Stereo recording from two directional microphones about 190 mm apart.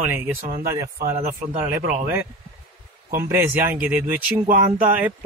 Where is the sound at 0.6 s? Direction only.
15° right (ahead or behind).